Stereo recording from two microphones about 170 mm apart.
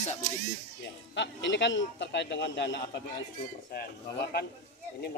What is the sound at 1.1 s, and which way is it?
Speech, 90° left.